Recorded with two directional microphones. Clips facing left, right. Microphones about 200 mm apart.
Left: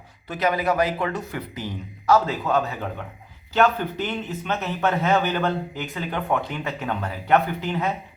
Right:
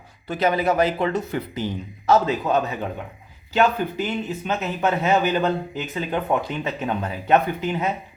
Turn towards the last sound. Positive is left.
turn(degrees=-15)  # may be behind; listen again after turning